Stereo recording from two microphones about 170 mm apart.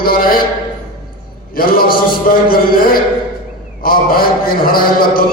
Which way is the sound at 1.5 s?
60° left (ahead or behind).